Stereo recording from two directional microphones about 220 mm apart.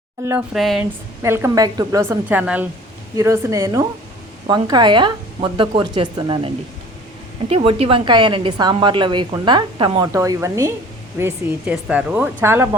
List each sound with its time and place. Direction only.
0.3 s speech: 5° right (ahead or behind)
1.2 s a woman's voice: 10° right (ahead or behind)
7.5 s a woman's voice: 25° right (ahead or behind); by 12.6 s 10° right (ahead or behind)